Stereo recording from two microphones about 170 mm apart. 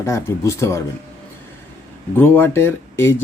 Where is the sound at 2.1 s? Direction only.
10° left (ahead or behind).